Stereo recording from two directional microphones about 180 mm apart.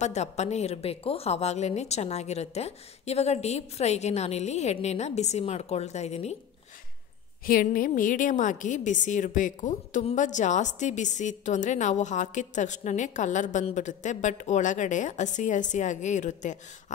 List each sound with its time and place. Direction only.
0.0 s a woman's voice: 40° left (ahead or behind)
7.4 s a woman's voice: 50° left (ahead or behind)